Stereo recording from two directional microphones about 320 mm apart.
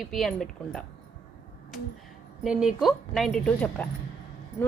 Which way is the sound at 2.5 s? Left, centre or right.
Centre.